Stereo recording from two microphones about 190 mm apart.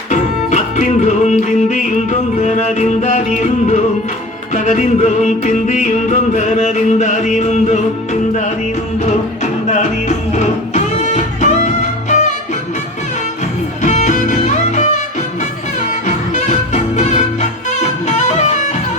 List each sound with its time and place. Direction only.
0.1 s music: 40° left (ahead or behind)
9.0 s music: 40° left (ahead or behind)
13.8 s music: 40° left (ahead or behind)
16.0 s music: 40° left (ahead or behind)
18.3 s music: 35° left (ahead or behind)